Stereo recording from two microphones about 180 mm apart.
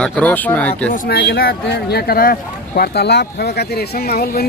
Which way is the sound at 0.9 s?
60° left (ahead or behind).